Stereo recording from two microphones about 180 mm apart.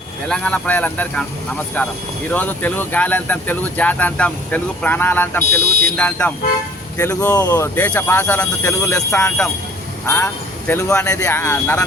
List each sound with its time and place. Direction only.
0.3 s speech: 5° left (ahead or behind)
5.5 s speech: 55° right (ahead or behind)
6.0 s speech: 10° left (ahead or behind)